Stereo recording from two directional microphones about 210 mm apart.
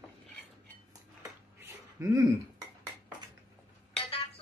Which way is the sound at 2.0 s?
15° right (ahead or behind).